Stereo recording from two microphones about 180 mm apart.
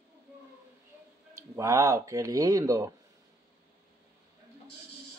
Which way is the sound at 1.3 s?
15° right (ahead or behind).